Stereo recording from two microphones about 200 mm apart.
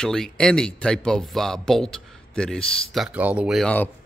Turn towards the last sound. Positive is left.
turn(degrees=5)  # may be behind; listen again after turning